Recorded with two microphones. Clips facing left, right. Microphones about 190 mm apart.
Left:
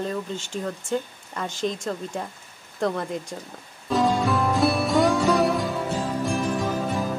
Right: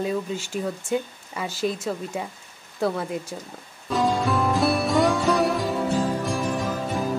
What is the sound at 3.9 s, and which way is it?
Music, centre (ahead or behind).